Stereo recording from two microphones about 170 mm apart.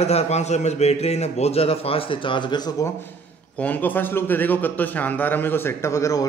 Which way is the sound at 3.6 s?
10° left (ahead or behind).